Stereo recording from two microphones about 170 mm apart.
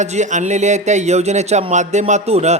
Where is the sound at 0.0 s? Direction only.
45° right (ahead or behind).